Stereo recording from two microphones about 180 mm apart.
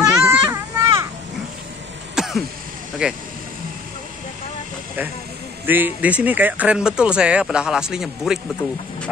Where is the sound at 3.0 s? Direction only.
5° right (ahead or behind).